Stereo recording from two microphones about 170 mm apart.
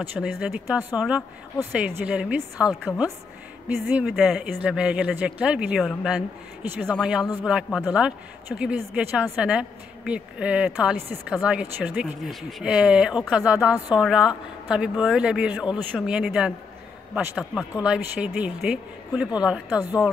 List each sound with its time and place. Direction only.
0.1 s speech: 5° right (ahead or behind)
19.8 s a woman's voice: 20° left (ahead or behind)